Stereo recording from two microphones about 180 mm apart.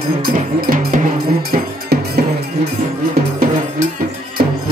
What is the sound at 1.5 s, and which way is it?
Music, 60° right (ahead or behind).